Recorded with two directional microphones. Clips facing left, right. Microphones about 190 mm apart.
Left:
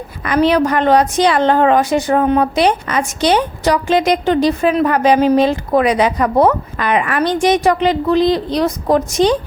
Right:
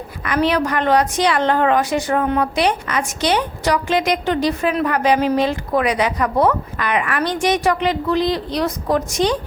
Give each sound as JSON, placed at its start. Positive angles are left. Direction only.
{"t": 0.3, "sound": "a woman's voice", "side_deg": 25}